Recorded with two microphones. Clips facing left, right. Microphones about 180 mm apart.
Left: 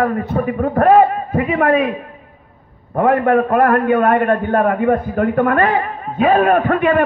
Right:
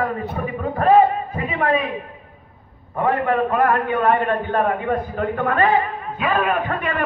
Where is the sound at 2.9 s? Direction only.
55° left (ahead or behind).